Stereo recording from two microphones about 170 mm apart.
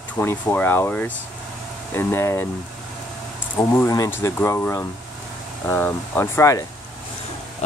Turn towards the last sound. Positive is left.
turn(degrees=15)  # may be behind; listen again after turning